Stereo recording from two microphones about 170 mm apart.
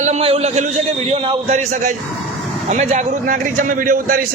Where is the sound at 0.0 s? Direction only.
40° right (ahead or behind).